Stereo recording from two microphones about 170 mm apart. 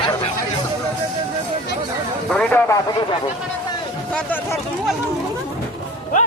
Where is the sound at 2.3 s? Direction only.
5° left (ahead or behind).